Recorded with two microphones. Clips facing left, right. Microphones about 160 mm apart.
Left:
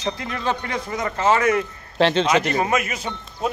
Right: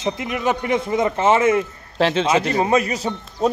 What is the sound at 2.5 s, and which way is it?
Speech, 30° right (ahead or behind).